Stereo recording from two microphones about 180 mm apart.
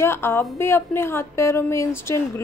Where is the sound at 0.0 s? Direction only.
15° left (ahead or behind).